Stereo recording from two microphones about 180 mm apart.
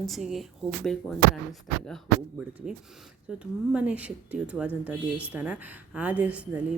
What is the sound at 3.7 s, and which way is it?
A woman's voice, 5° right (ahead or behind).